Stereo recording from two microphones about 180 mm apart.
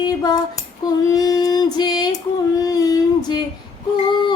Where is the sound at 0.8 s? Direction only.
20° left (ahead or behind).